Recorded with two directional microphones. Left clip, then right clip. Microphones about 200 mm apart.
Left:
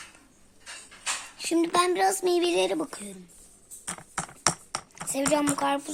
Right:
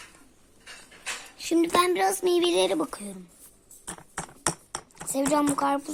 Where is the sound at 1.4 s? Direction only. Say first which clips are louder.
Right 2 dB; centre (ahead or behind).